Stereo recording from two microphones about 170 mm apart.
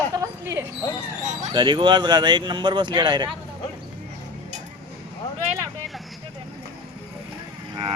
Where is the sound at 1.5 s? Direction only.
25° right (ahead or behind).